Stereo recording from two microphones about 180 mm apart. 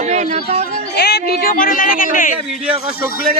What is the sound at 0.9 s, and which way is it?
Speech, 65° left (ahead or behind).